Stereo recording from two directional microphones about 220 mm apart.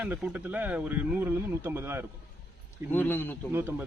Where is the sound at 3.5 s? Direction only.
10° right (ahead or behind).